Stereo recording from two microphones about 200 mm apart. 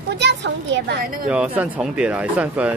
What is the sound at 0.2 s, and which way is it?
Speech, 60° right (ahead or behind).